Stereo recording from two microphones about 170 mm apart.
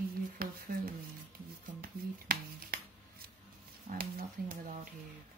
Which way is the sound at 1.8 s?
60° right (ahead or behind).